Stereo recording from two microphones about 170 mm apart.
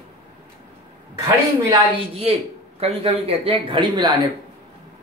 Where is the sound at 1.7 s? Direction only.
35° right (ahead or behind).